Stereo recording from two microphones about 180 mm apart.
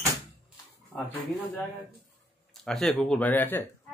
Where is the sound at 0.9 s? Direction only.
10° left (ahead or behind).